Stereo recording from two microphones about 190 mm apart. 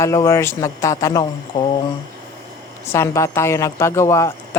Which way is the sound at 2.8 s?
15° left (ahead or behind).